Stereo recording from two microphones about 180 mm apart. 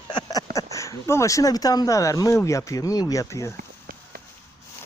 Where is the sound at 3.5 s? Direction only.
55° right (ahead or behind).